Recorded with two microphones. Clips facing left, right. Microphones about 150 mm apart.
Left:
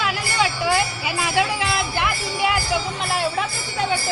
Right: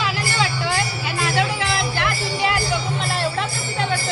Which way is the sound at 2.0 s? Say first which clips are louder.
Even; 10° left (ahead or behind).